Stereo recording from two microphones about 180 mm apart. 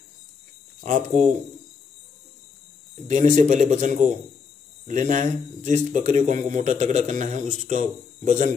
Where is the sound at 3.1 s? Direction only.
45° right (ahead or behind).